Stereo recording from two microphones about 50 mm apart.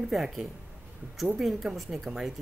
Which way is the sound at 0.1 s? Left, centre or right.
Centre.